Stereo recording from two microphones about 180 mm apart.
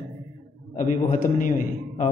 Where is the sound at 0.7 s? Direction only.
45° left (ahead or behind).